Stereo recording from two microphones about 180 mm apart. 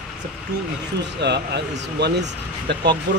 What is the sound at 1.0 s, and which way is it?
Speech, 70° right (ahead or behind).